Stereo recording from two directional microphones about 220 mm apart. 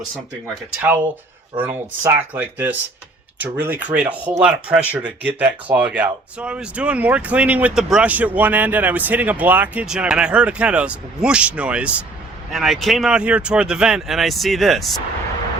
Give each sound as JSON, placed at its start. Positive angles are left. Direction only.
{"t": 0.8, "sound": "speech", "side_deg": -10}